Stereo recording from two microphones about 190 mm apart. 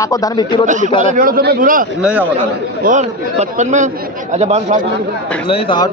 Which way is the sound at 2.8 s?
40° right (ahead or behind).